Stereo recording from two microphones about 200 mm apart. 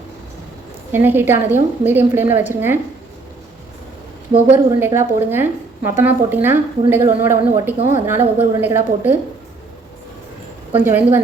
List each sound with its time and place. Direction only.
0.9 s a woman's voice: 10° right (ahead or behind)
4.5 s a woman's voice: 10° right (ahead or behind)
10.8 s a woman's voice: 10° right (ahead or behind)